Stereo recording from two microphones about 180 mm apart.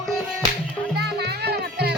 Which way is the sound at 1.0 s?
65° right (ahead or behind).